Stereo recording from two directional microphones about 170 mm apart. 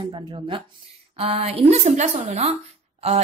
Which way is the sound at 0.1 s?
30° right (ahead or behind).